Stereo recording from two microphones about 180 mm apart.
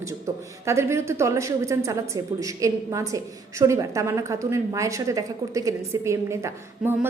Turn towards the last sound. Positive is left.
turn(degrees=-15)  # may be behind; listen again after turning